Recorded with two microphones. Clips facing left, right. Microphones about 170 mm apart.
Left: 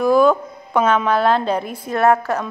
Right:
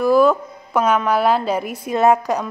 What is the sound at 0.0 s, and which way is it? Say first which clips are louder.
A woman's voice: even; centre (ahead or behind).